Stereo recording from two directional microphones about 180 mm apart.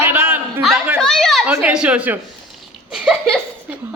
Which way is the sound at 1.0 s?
Centre (ahead or behind).